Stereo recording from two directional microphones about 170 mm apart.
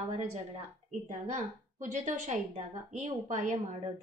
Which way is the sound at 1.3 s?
45° right (ahead or behind).